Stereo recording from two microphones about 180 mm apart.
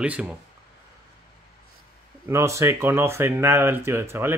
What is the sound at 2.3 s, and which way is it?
Speech, 15° right (ahead or behind).